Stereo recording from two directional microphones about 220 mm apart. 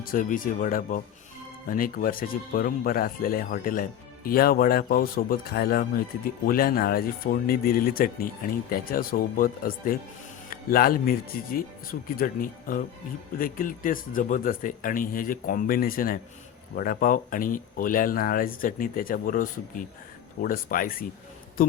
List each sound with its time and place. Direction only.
0.0 s speech: 40° left (ahead or behind)